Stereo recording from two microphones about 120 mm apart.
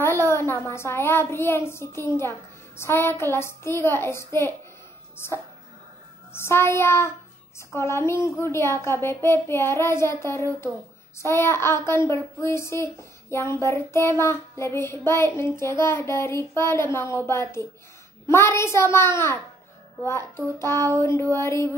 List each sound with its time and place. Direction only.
0.0 s a child's voice: 20° left (ahead or behind)
2.8 s child singing: 20° left (ahead or behind)
5.1 s speech: 20° left (ahead or behind)
6.3 s child singing: 20° left (ahead or behind)
11.1 s child singing: 20° left (ahead or behind)